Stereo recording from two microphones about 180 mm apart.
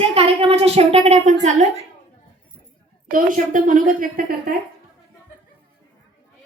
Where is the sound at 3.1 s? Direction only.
45° right (ahead or behind).